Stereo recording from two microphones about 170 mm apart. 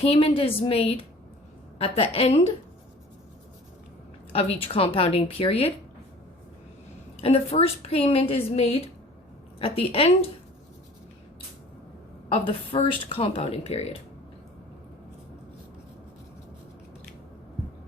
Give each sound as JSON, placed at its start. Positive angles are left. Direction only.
{"t": 0.0, "sound": "a woman's voice", "side_deg": 35}
{"t": 4.3, "sound": "a woman's voice", "side_deg": 35}
{"t": 7.2, "sound": "a woman's voice", "side_deg": 35}
{"t": 12.3, "sound": "a woman's voice", "side_deg": 30}